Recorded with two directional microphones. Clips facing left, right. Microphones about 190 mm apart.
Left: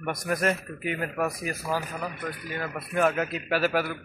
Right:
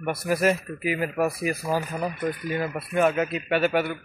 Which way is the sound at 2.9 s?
Centre (ahead or behind).